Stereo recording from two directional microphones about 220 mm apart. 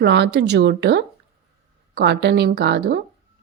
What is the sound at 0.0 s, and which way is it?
A woman's voice, 50° right (ahead or behind).